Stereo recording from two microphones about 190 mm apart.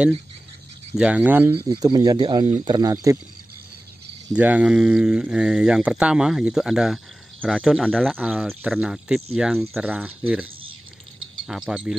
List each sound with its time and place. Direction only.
0.9 s speech: 5° right (ahead or behind)
1.6 s speech: 25° right (ahead or behind)
4.3 s speech: 10° right (ahead or behind)